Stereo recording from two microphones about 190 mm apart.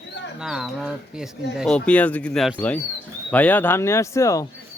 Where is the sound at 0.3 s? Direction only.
5° right (ahead or behind); by 4.4 s 15° left (ahead or behind).